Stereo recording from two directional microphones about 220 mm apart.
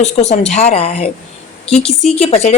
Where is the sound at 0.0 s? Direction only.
30° left (ahead or behind).